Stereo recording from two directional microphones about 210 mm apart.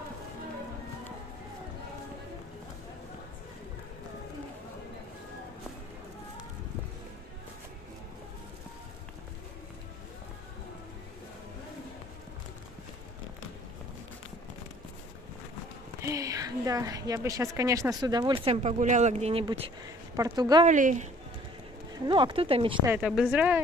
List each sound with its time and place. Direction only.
16.0 s a woman's voice: 15° right (ahead or behind)
20.2 s a woman's voice: 15° right (ahead or behind)
20.6 s speech: 35° right (ahead or behind)
22.0 s speech: 20° right (ahead or behind)
22.8 s speech: 5° right (ahead or behind)